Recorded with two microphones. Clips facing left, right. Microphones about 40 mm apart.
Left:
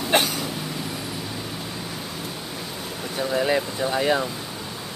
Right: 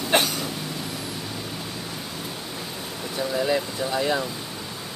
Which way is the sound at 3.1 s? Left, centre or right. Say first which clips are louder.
Left 2 dB; centre.